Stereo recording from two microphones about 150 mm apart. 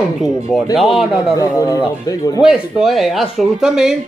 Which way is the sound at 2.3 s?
5° right (ahead or behind).